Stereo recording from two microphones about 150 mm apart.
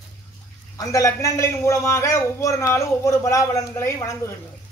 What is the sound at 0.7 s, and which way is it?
A man's voice, 20° left (ahead or behind).